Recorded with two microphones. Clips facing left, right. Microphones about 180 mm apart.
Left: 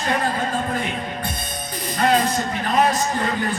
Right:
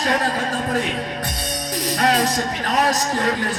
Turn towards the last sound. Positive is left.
turn(degrees=-85)